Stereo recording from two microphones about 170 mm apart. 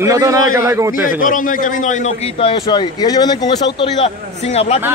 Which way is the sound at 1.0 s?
50° left (ahead or behind).